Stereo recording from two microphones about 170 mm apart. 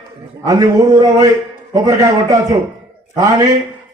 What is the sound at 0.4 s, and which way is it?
A man's voice, 20° right (ahead or behind).